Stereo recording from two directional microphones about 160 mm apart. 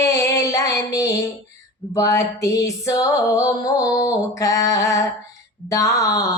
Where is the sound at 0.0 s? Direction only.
20° left (ahead or behind).